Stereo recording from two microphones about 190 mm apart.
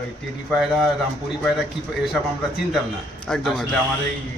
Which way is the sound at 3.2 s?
Centre (ahead or behind).